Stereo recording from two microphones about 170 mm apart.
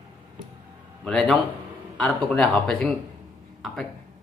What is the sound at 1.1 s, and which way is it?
Speech, centre (ahead or behind).